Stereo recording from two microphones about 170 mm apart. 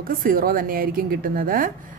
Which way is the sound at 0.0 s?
55° right (ahead or behind).